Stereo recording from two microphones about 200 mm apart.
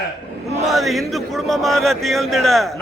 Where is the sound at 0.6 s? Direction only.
Centre (ahead or behind).